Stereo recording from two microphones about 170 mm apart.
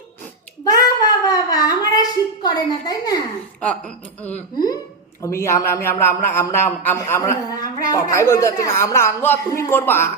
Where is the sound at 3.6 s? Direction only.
5° left (ahead or behind).